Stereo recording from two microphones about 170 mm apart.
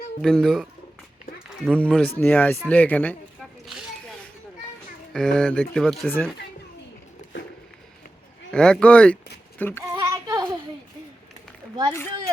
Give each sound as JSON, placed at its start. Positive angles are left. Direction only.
{"t": 0.2, "sound": "speech", "side_deg": 5}
{"t": 1.5, "sound": "a sound", "side_deg": -5}
{"t": 1.8, "sound": "speech", "side_deg": 5}
{"t": 5.1, "sound": "speech", "side_deg": 5}
{"t": 8.5, "sound": "speech", "side_deg": 5}
{"t": 9.6, "sound": "child singing", "side_deg": 10}
{"t": 9.9, "sound": "child singing", "side_deg": -20}